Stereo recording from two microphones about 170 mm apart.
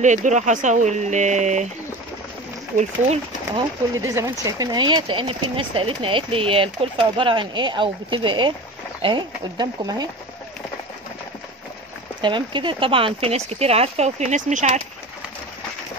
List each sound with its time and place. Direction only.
0.0 s speech: 45° right (ahead or behind)
3.5 s speech: 20° right (ahead or behind)
12.2 s speech: 30° right (ahead or behind); by 14.8 s 45° right (ahead or behind)